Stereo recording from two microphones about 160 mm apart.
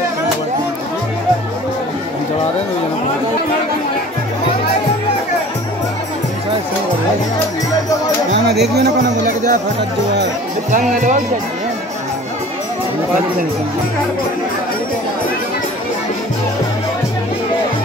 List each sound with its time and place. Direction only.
9.2 s speech: 50° right (ahead or behind)
10.7 s speech: 55° right (ahead or behind)